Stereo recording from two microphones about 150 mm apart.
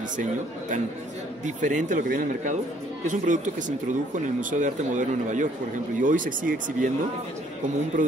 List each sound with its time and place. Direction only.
1.4 s speech: 55° right (ahead or behind)